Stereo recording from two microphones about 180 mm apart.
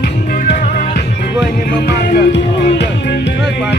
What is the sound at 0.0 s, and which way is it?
Music, 55° left (ahead or behind).